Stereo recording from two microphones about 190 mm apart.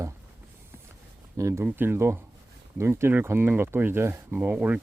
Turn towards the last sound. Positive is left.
turn(degrees=-10)  # may be behind; listen again after turning